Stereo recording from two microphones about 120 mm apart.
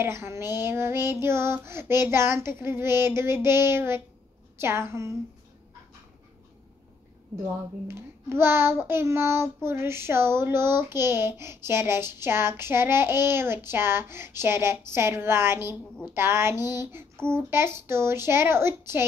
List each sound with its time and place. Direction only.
0.0 s child singing: 20° right (ahead or behind)
7.9 s child singing: 20° right (ahead or behind)